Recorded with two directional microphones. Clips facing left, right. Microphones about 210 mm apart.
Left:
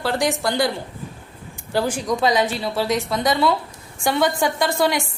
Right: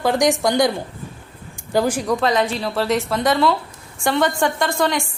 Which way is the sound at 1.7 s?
10° right (ahead or behind).